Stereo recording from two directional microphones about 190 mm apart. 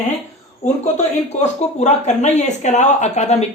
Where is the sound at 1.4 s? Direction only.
35° left (ahead or behind).